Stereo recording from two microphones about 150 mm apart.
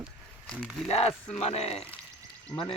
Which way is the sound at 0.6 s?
5° right (ahead or behind).